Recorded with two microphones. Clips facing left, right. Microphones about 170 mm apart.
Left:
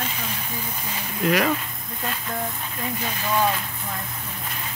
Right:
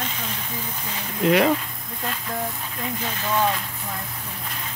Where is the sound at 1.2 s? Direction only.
25° right (ahead or behind).